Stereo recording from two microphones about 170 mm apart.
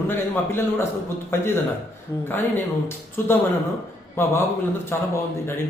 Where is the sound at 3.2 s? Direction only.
10° left (ahead or behind).